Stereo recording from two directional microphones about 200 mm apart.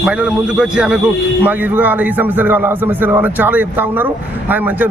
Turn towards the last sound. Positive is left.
turn(degrees=-10)  # may be behind; listen again after turning